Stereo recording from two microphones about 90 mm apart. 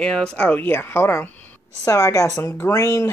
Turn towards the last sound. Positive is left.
turn(degrees=35)  # may be behind; listen again after turning